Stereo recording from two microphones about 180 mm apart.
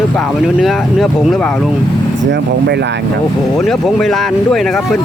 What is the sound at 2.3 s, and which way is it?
Speech, 70° right (ahead or behind).